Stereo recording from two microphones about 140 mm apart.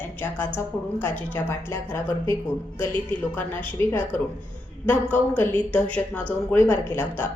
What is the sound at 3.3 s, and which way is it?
A woman's voice, 15° left (ahead or behind).